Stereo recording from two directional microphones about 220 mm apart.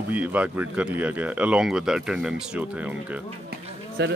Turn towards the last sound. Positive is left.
turn(degrees=-50)  # may be behind; listen again after turning